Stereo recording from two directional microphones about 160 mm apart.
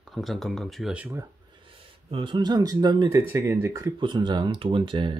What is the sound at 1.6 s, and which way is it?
Speech, 35° right (ahead or behind).